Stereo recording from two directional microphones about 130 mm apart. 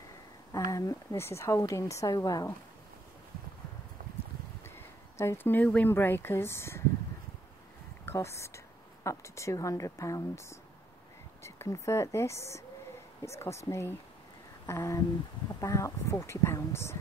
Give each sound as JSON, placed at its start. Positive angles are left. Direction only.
{"t": 0.5, "sound": "a woman's voice", "side_deg": 30}
{"t": 5.2, "sound": "speech", "side_deg": 20}
{"t": 8.0, "sound": "a woman's voice", "side_deg": 20}